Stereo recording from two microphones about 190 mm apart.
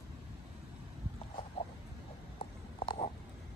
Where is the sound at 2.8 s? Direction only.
25° left (ahead or behind).